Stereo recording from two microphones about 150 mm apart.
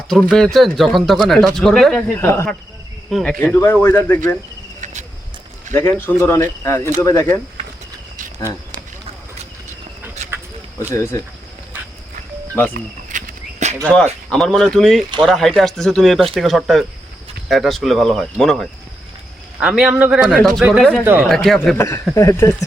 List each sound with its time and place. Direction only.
0.1 s speech: 5° left (ahead or behind)
2.0 s speech: 15° left (ahead or behind)
3.1 s speech: centre (ahead or behind)
3.4 s speech: 15° left (ahead or behind)
5.7 s speech: 15° left (ahead or behind)
10.2 s a sound: 50° right (ahead or behind)
10.8 s speech: 20° left (ahead or behind)
12.7 s a sound: 60° right (ahead or behind)
13.8 s speech: 5° left (ahead or behind)
21.0 s speech: 15° right (ahead or behind)
21.2 s speech: centre (ahead or behind)
21.8 s speech: 20° left (ahead or behind)